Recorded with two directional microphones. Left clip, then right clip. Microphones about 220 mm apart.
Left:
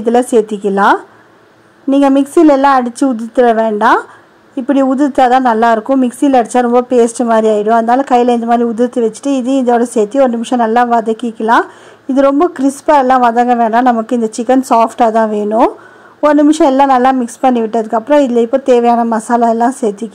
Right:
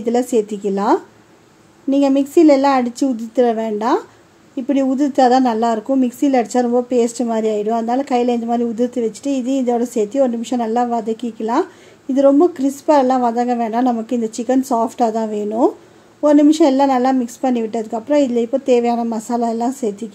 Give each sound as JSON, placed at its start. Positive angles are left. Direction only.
{"t": 0.3, "sound": "a woman's voice", "side_deg": 10}
{"t": 4.7, "sound": "a woman's voice", "side_deg": 10}
{"t": 5.6, "sound": "speech", "side_deg": 20}
{"t": 6.0, "sound": "a woman's voice", "side_deg": 10}